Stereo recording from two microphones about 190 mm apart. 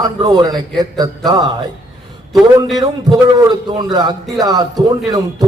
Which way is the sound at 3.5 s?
20° right (ahead or behind).